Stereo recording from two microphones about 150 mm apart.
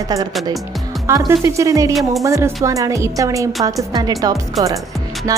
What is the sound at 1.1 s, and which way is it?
A woman's voice, 15° right (ahead or behind).